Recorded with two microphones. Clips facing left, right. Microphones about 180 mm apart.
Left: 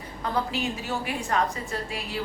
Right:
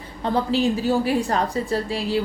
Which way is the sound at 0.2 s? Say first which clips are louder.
Right 7 dB; 30° right (ahead or behind).